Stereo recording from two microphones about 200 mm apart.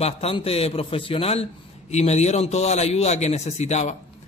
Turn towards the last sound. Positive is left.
turn(degrees=30)  # may be behind; listen again after turning